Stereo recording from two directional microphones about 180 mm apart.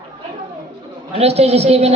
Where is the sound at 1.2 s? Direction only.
35° right (ahead or behind).